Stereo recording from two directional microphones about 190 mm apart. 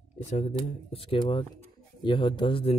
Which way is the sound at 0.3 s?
35° left (ahead or behind).